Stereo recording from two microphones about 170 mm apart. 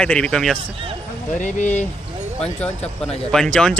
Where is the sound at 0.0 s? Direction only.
5° left (ahead or behind).